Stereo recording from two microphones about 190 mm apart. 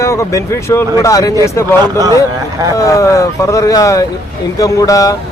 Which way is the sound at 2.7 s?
15° left (ahead or behind).